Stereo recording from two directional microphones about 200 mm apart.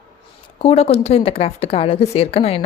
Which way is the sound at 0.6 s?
30° left (ahead or behind).